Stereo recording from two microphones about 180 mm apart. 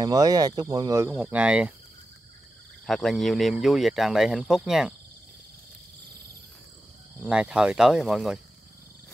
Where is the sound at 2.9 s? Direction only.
Centre (ahead or behind).